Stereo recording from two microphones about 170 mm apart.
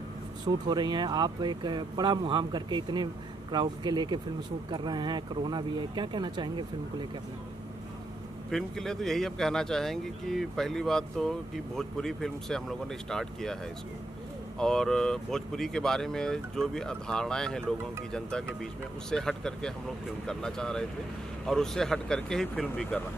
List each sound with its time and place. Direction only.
0.5 s speech: 25° right (ahead or behind)
8.5 s speech: 5° left (ahead or behind)
14.6 s speech: 5° left (ahead or behind)